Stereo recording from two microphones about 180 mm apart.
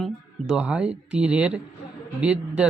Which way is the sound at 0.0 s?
5° right (ahead or behind).